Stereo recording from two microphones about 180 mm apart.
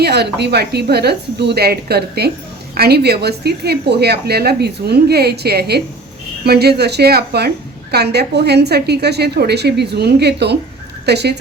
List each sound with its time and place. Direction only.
0.0 s a woman's voice: 65° right (ahead or behind)